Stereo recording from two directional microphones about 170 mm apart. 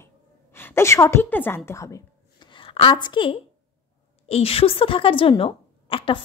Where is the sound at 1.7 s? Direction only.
20° left (ahead or behind).